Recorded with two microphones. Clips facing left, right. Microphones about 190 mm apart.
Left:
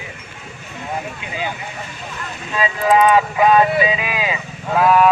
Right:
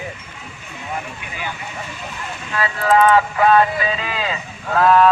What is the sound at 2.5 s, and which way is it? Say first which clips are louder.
Speech: left 1 dB; 15° left (ahead or behind).